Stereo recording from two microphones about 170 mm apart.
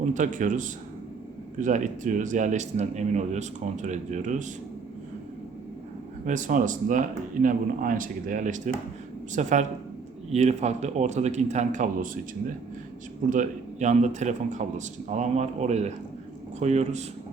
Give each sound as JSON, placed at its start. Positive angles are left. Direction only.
{"t": 0.0, "sound": "a man's voice", "side_deg": -45}
{"t": 6.2, "sound": "a man's voice", "side_deg": -50}
{"t": 13.3, "sound": "a man's voice", "side_deg": -45}